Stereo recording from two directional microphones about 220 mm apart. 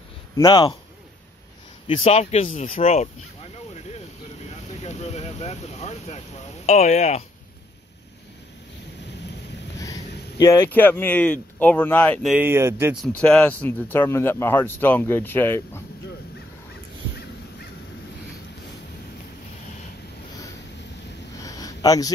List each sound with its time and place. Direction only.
0.4 s speech: 20° left (ahead or behind)
1.9 s speech: 30° left (ahead or behind)
4.8 s speech: 30° left (ahead or behind)
10.4 s speech: 15° left (ahead or behind); by 12.9 s 10° right (ahead or behind)
13.0 s speech: 5° left (ahead or behind)
21.4 s a sound: 15° left (ahead or behind)